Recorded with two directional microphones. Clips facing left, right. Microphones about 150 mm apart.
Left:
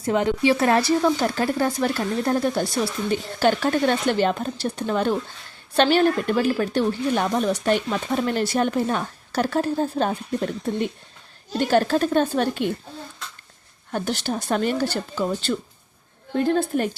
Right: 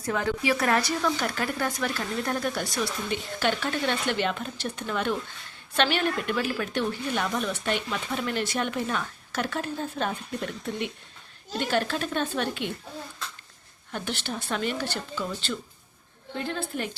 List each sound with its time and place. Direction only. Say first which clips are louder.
0.0 s speech: left 7 dB; 20° left (ahead or behind); by 12.7 s 40° left (ahead or behind)
13.9 s a woman's voice: left 7 dB; 40° left (ahead or behind)